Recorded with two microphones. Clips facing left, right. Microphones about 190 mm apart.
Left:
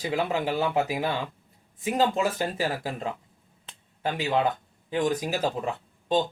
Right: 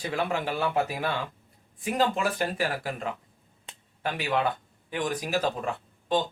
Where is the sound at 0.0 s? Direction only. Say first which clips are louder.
Left 2 dB; 20° left (ahead or behind).